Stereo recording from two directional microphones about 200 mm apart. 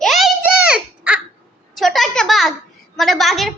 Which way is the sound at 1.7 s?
Centre (ahead or behind).